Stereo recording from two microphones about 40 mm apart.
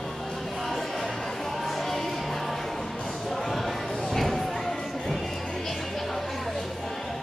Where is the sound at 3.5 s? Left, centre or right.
Centre.